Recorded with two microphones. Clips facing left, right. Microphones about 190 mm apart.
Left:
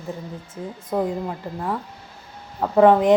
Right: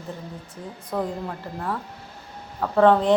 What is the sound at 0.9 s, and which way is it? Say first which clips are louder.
A woman's voice: left 4 dB; 15° left (ahead or behind).